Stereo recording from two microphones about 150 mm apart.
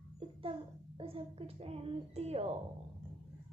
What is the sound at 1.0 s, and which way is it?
A child's voice, 40° right (ahead or behind).